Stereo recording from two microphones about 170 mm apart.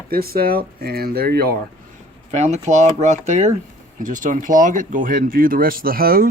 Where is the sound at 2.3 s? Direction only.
40° right (ahead or behind).